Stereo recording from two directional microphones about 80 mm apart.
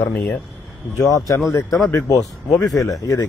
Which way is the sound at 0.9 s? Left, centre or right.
Left.